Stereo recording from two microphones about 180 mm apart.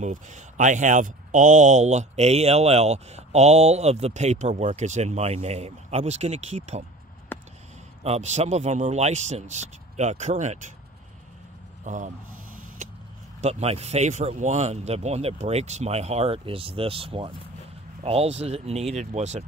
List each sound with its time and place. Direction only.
0.0 s speech: 45° right (ahead or behind)
7.3 s a sound: 10° left (ahead or behind)
8.0 s speech: 35° right (ahead or behind)
11.8 s speech: 45° right (ahead or behind)
13.4 s speech: 35° right (ahead or behind)